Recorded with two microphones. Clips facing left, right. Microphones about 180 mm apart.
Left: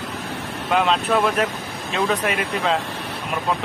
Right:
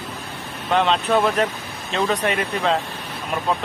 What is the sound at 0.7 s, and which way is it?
Speech, 5° left (ahead or behind).